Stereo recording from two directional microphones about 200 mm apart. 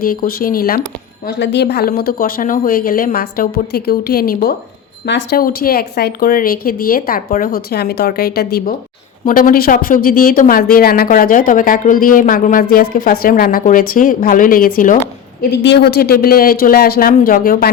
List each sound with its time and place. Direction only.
0.0 s speech: 45° left (ahead or behind)
1.4 s speech: 60° left (ahead or behind); by 14.9 s 45° left (ahead or behind)
15.4 s speech: 60° left (ahead or behind)